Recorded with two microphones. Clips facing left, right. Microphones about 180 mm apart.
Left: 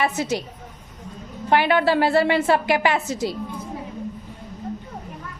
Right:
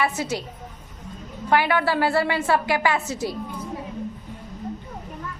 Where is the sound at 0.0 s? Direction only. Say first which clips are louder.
Left 2 dB; 20° left (ahead or behind).